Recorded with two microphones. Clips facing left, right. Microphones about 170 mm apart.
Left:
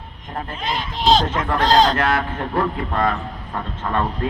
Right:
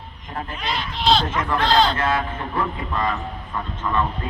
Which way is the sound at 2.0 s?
75° left (ahead or behind).